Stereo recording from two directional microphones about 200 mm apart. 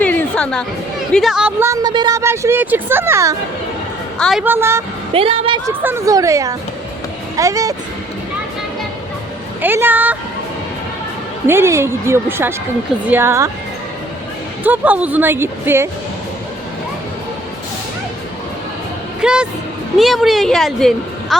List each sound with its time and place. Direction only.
0.0 s chatter: 5° left (ahead or behind)
1.1 s speech: centre (ahead or behind)
4.2 s a woman's voice: centre (ahead or behind)
4.4 s speech: 10° right (ahead or behind)
5.1 s a woman's voice: 30° right (ahead or behind)
5.6 s speech: 15° right (ahead or behind)
9.6 s speech: 10° right (ahead or behind)
11.4 s speech: 15° right (ahead or behind)
14.6 s speech: 10° right (ahead or behind)
19.2 s a woman's voice: 5° right (ahead or behind)